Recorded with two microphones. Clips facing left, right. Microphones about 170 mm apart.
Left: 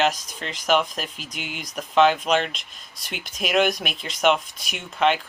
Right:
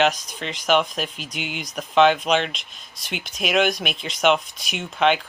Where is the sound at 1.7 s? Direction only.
Centre (ahead or behind).